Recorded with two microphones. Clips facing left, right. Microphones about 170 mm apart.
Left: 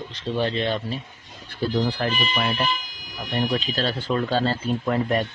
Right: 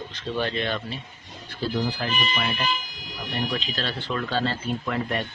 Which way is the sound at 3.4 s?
40° left (ahead or behind).